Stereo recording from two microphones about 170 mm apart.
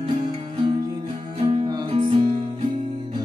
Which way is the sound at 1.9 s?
40° right (ahead or behind).